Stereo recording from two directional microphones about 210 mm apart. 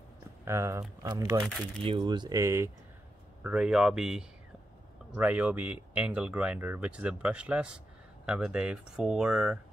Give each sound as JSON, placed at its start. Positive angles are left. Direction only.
{"t": 0.5, "sound": "speech", "side_deg": -15}